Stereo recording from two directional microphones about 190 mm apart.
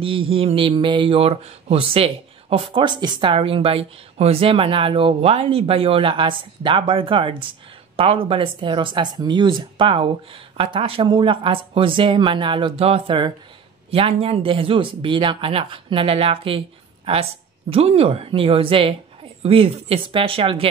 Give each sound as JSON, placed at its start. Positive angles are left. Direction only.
{"t": 0.0, "sound": "speech", "side_deg": -30}